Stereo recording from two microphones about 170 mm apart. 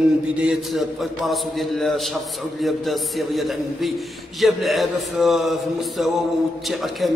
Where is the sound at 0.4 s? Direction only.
5° right (ahead or behind).